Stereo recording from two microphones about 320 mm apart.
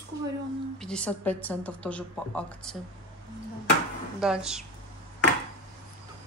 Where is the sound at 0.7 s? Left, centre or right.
Centre.